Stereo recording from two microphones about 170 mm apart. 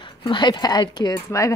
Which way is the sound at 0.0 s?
30° left (ahead or behind).